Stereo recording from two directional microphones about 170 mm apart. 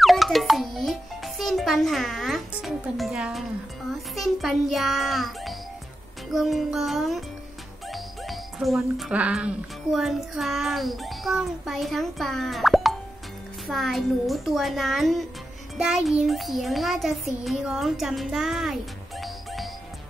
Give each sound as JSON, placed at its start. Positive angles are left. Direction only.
{"t": 0.0, "sound": "music", "side_deg": 0}
{"t": 4.1, "sound": "child singing", "side_deg": 0}
{"t": 7.9, "sound": "speech", "side_deg": 0}
{"t": 13.7, "sound": "child singing", "side_deg": 0}